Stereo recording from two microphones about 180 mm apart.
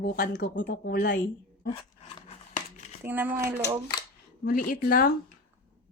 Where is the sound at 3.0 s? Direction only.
10° right (ahead or behind).